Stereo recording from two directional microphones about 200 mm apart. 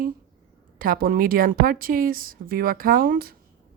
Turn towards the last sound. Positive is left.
turn(degrees=-45)  # may be behind; listen again after turning